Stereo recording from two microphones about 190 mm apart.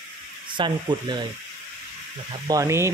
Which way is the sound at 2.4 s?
15° right (ahead or behind).